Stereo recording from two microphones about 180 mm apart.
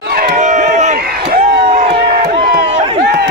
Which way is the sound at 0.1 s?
45° right (ahead or behind).